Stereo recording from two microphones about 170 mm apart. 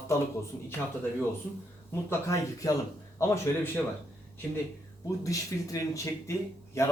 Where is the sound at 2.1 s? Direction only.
20° left (ahead or behind).